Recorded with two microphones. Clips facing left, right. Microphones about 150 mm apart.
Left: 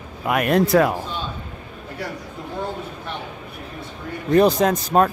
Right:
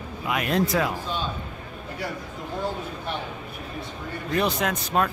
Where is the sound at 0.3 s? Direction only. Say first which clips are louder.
Left 7 dB; 55° left (ahead or behind).